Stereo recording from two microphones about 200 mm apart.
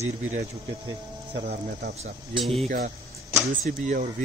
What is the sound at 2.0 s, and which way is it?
Speech, 25° right (ahead or behind).